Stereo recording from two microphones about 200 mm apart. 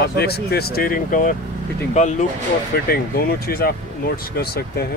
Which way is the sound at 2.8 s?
50° left (ahead or behind).